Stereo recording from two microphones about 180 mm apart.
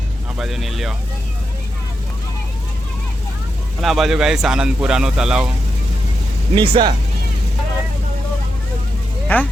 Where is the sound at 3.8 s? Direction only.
Centre (ahead or behind).